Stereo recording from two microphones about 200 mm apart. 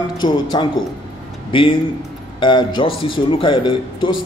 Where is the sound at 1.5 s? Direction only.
25° left (ahead or behind).